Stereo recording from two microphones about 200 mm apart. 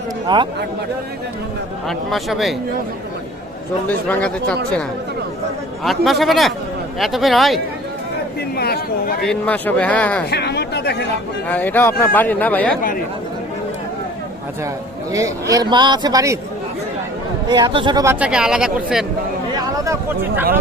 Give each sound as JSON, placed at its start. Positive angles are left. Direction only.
{"t": 0.3, "sound": "speech", "side_deg": -20}
{"t": 1.9, "sound": "speech", "side_deg": 0}
{"t": 3.8, "sound": "speech", "side_deg": 5}
{"t": 8.4, "sound": "speech", "side_deg": 50}
{"t": 9.2, "sound": "speech", "side_deg": 5}
{"t": 10.2, "sound": "speech", "side_deg": 55}
{"t": 11.4, "sound": "speech", "side_deg": 10}
{"t": 15.1, "sound": "speech", "side_deg": -15}
{"t": 17.5, "sound": "speech", "side_deg": -25}
{"t": 19.5, "sound": "a sound", "side_deg": -15}